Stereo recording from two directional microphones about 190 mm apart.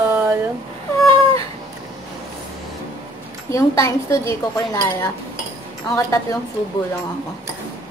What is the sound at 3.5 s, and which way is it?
Speech, 15° left (ahead or behind).